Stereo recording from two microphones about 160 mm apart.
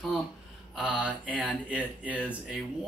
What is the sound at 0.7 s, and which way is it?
Speech, 10° right (ahead or behind).